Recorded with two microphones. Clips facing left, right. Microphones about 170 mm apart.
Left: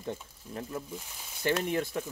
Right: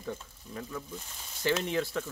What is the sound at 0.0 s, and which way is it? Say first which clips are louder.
Frying: left 1 dB; 25° left (ahead or behind).